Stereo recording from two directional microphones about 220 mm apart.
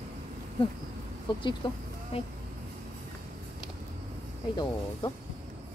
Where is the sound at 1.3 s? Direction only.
20° left (ahead or behind).